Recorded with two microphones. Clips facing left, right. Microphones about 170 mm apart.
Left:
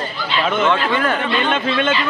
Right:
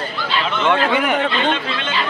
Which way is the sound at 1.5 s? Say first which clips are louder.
Left 3 dB; 50° left (ahead or behind).